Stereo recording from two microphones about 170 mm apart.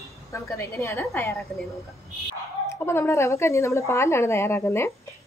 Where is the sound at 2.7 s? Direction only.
15° left (ahead or behind).